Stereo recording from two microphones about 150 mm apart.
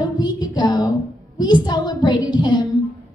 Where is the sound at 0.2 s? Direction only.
30° left (ahead or behind).